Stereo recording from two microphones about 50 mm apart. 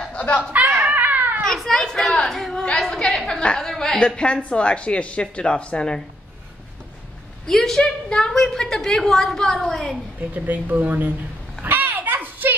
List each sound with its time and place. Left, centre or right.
0.5 s a sound: right
1.4 s a woman's voice: centre
2.9 s a woman's voice: centre
4.2 s a woman's voice: left
7.4 s a woman's voice: centre
10.3 s speech: right
11.6 s a sound: right